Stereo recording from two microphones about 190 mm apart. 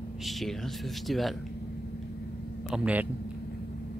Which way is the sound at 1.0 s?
Centre (ahead or behind).